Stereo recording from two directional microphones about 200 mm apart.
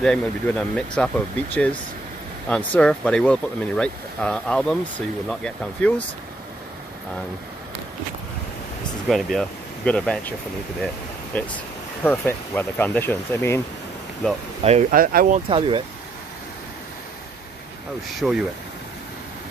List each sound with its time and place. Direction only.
0.0 s speech: 5° left (ahead or behind)
9.1 s speech: centre (ahead or behind)
11.3 s speech: 10° left (ahead or behind)
14.6 s speech: 35° right (ahead or behind)
15.4 s speech: 25° right (ahead or behind)
18.1 s speech: centre (ahead or behind)